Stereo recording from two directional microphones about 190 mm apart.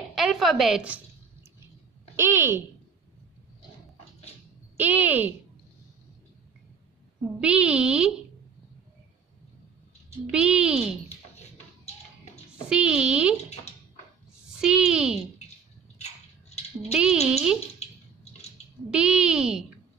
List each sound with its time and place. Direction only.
0.1 s a sound: centre (ahead or behind)
2.1 s speech: 15° right (ahead or behind)
4.7 s speech: 10° right (ahead or behind)
7.6 s speech: 5° right (ahead or behind)
10.3 s speech: 5° right (ahead or behind)
12.6 s speech: 5° right (ahead or behind)
14.6 s speech: 5° right (ahead or behind)
16.0 s a sound: 35° left (ahead or behind)
16.9 s speech: 5° right (ahead or behind)
17.8 s a sound: 35° left (ahead or behind)
18.9 s speech: 5° right (ahead or behind)